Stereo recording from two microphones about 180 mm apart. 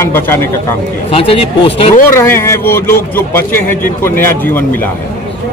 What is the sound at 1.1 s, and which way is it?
Speech, 30° left (ahead or behind).